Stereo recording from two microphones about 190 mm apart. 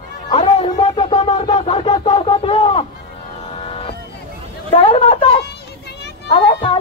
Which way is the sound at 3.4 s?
30° left (ahead or behind).